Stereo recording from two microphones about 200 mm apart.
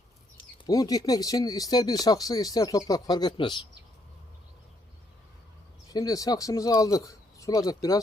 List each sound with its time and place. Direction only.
0.6 s speech: 20° left (ahead or behind)
5.9 s speech: 20° left (ahead or behind)